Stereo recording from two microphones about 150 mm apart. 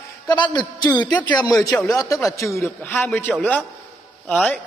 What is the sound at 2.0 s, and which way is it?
A man's voice, 20° left (ahead or behind).